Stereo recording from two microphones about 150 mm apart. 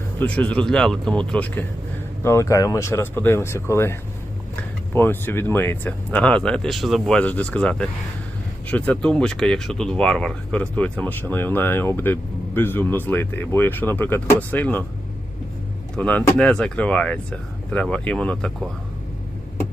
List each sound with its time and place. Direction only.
0.2 s speech: 10° left (ahead or behind)
2.2 s speech: 20° left (ahead or behind)
4.9 s speech: 15° left (ahead or behind)
16.0 s speech: 10° left (ahead or behind)